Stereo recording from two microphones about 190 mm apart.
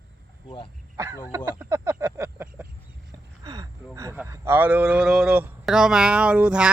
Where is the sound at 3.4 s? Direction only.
20° right (ahead or behind).